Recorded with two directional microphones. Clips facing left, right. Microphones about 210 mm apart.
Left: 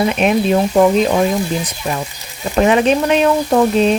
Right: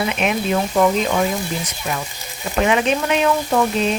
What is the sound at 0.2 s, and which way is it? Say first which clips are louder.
Speech: left 6 dB; 35° left (ahead or behind).